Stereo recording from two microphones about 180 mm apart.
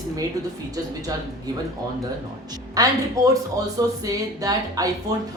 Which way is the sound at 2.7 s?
20° right (ahead or behind).